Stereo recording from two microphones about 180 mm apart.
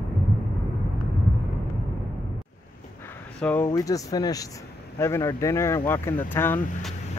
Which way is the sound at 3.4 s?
10° left (ahead or behind).